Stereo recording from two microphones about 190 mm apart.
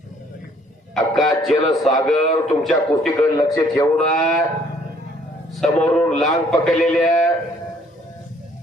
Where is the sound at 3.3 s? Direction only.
15° left (ahead or behind).